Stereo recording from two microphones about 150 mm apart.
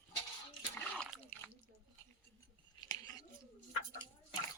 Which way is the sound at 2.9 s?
25° left (ahead or behind).